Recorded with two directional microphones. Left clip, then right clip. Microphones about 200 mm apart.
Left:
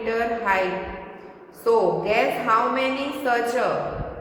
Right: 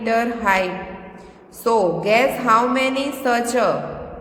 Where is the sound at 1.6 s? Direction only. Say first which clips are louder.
Right 2 dB; 50° right (ahead or behind).